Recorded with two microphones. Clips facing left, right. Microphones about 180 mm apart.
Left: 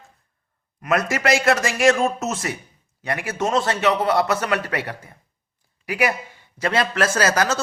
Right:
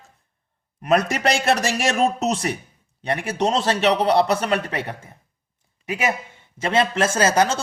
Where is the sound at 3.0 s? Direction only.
30° right (ahead or behind).